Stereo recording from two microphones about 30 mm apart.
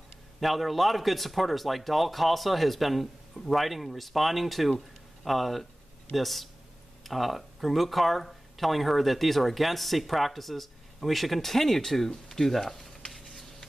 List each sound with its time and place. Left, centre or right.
0.4 s speech: centre